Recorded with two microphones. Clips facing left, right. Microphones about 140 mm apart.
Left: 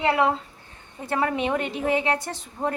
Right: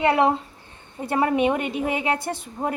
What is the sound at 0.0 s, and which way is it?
A woman's voice, 20° right (ahead or behind).